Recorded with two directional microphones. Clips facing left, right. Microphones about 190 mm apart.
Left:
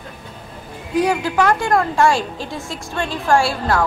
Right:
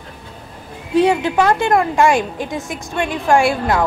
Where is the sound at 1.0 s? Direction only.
25° right (ahead or behind).